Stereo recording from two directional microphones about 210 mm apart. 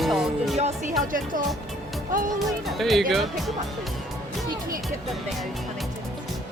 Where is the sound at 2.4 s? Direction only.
Centre (ahead or behind).